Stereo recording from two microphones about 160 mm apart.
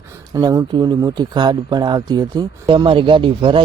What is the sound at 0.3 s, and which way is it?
Speech, 20° right (ahead or behind).